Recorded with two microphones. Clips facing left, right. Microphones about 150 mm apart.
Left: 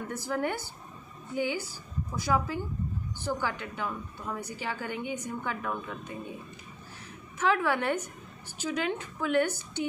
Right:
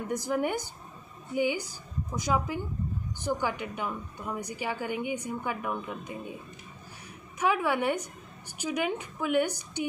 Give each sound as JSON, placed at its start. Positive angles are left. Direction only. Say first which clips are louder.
{"t": 0.0, "sound": "a woman's voice", "louder": "right 2 dB", "side_deg": -15}
{"t": 7.3, "sound": "a woman's voice", "louder": "even", "side_deg": -15}